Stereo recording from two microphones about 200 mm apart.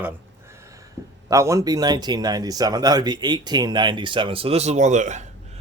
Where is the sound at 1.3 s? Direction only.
15° right (ahead or behind); by 5.3 s 35° right (ahead or behind).